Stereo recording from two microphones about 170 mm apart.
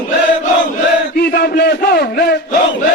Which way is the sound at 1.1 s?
65° left (ahead or behind).